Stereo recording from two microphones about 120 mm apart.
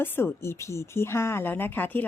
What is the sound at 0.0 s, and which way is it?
A woman's voice, 20° left (ahead or behind).